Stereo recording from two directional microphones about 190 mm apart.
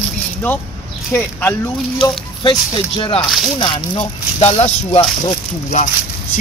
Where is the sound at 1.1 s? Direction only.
10° left (ahead or behind).